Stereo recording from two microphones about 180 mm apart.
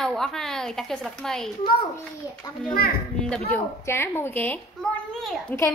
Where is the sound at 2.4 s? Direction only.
20° left (ahead or behind).